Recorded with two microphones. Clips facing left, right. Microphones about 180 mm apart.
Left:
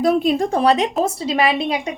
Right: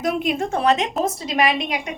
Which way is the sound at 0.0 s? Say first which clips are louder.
Left 5 dB; 35° left (ahead or behind).